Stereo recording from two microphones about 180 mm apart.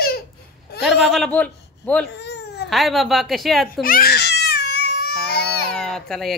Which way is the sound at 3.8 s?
55° left (ahead or behind).